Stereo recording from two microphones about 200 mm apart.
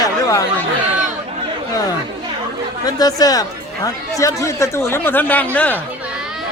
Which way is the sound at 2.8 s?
20° left (ahead or behind).